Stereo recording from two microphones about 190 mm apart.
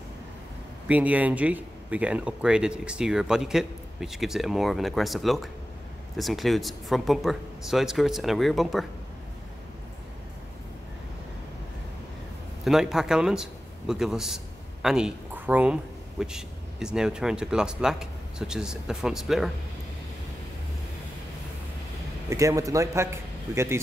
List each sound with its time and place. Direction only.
0.8 s speech: 5° right (ahead or behind)
12.6 s a man's voice: centre (ahead or behind)
22.3 s a man's voice: 15° right (ahead or behind)